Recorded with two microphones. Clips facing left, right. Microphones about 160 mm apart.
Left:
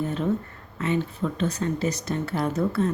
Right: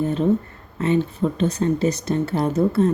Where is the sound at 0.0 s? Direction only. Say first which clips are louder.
Right 6 dB; 25° right (ahead or behind).